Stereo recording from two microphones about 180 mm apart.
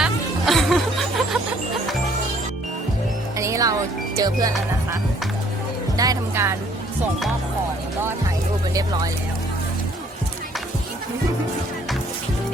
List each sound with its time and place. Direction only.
0.0 s music: centre (ahead or behind)
3.3 s music: 15° right (ahead or behind)
6.0 s speech: 15° right (ahead or behind)